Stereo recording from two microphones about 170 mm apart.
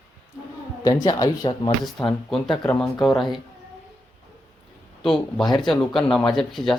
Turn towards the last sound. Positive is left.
turn(degrees=0)  # may be behind; listen again after turning